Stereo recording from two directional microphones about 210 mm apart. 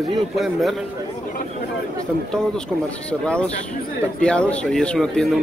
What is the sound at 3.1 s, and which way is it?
A man's voice, 5° left (ahead or behind).